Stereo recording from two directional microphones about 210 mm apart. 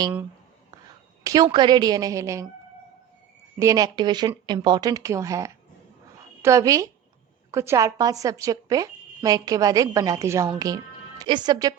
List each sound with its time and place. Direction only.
1.2 s speech: 15° right (ahead or behind)
3.6 s a woman's voice: 15° right (ahead or behind)